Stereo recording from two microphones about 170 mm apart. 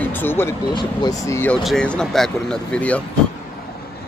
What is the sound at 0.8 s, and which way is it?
Speech, 20° left (ahead or behind).